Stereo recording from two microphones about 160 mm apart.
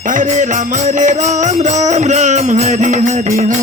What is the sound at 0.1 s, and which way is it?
Music, 50° right (ahead or behind).